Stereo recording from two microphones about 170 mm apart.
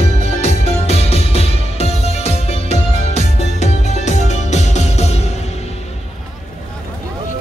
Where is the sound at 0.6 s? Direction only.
35° left (ahead or behind).